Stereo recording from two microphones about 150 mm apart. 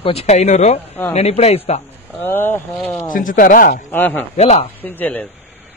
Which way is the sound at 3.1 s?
65° left (ahead or behind).